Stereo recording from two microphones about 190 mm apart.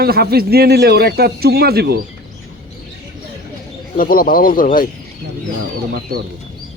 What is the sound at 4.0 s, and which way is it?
Speech, 50° left (ahead or behind).